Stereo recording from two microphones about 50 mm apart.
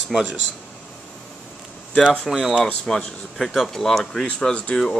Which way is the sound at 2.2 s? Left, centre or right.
Centre.